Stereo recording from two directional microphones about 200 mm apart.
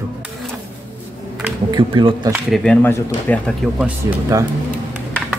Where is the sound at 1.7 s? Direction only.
25° right (ahead or behind).